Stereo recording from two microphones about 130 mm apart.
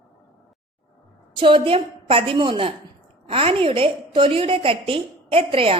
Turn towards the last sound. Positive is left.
turn(degrees=-45)  # may be behind; listen again after turning